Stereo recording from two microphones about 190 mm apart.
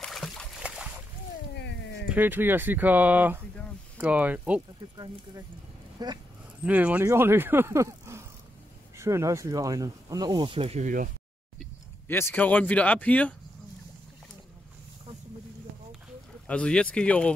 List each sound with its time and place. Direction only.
0.0 s a sound: centre (ahead or behind)
2.0 s speech: 10° right (ahead or behind)
4.9 s speech: 20° right (ahead or behind)
6.6 s speech: 10° right (ahead or behind); by 11.1 s 40° right (ahead or behind)
12.1 s speech: 10° left (ahead or behind)
16.4 s speech: 5° left (ahead or behind)